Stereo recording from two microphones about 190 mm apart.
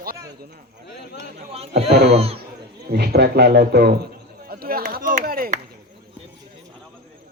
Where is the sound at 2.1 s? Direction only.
30° right (ahead or behind).